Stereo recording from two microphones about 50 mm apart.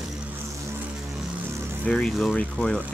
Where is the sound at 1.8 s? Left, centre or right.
Centre.